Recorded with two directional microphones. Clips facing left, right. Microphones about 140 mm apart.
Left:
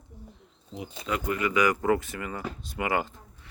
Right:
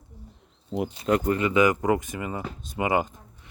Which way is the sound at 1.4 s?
25° right (ahead or behind).